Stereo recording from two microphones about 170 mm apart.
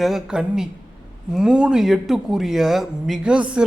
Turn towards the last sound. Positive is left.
turn(degrees=-5)  # may be behind; listen again after turning